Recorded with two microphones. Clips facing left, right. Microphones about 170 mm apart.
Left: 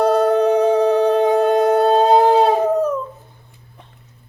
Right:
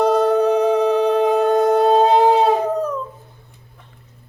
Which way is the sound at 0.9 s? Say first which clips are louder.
Left 1 dB; centre (ahead or behind).